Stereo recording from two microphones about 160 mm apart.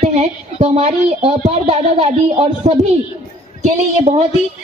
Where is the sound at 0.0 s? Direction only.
45° right (ahead or behind).